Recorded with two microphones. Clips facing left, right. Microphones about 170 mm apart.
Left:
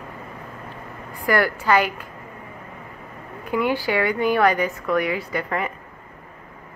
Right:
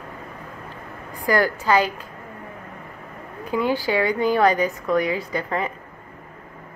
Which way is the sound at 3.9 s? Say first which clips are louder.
Right 1 dB; 25° right (ahead or behind).